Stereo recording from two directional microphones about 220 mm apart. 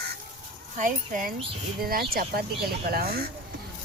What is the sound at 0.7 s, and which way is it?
Speech, 35° right (ahead or behind).